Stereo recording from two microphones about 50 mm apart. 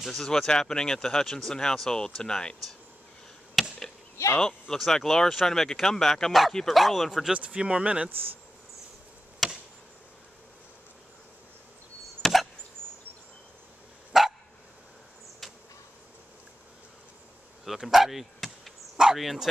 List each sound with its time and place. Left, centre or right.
0.1 s speech: centre
3.6 s chop: centre
4.4 s speech: centre
6.8 s speech: centre
7.3 s speech: right
9.4 s chop: centre
12.2 s chop: centre
14.1 s dog: centre
15.4 s a sound: centre
17.6 s insect: centre
19.1 s speech: centre